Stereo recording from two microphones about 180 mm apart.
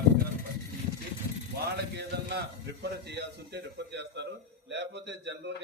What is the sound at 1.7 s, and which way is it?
A man's voice, 65° right (ahead or behind).